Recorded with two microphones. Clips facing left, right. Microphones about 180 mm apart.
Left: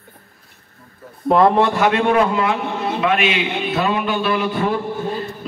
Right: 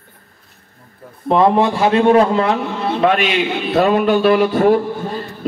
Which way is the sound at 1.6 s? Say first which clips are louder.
Right 3 dB; 30° right (ahead or behind).